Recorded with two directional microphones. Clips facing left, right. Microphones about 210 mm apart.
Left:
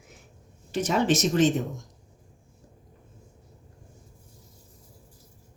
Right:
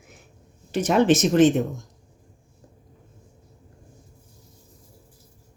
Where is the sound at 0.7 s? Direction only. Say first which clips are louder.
Right 5 dB; 55° right (ahead or behind).